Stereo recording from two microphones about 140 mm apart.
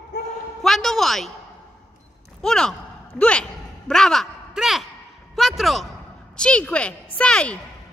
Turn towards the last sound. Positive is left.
turn(degrees=5)  # may be behind; listen again after turning